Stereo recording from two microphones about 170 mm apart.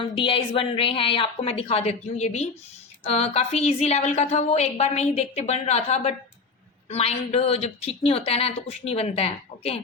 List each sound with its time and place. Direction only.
0.0 s a woman's voice: 30° left (ahead or behind)